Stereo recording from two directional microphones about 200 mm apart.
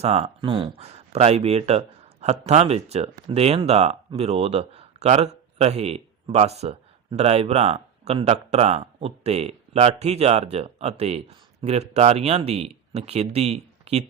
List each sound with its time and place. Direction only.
0.0 s speech: 30° right (ahead or behind)